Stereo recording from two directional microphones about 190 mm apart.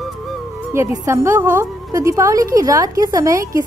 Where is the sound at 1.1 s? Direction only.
10° right (ahead or behind).